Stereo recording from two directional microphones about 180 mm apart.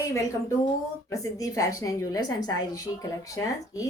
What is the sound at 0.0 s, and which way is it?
A woman's voice, 15° left (ahead or behind).